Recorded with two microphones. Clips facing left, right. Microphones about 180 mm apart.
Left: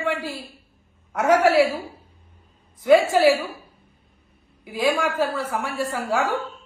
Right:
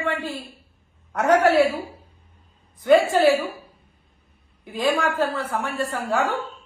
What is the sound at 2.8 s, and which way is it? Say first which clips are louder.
Speech: left 1 dB; 5° left (ahead or behind).